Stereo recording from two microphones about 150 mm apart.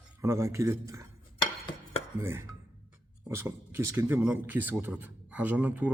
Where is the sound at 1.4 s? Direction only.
30° left (ahead or behind).